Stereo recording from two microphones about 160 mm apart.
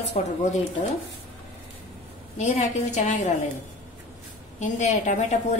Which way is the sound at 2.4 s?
45° left (ahead or behind).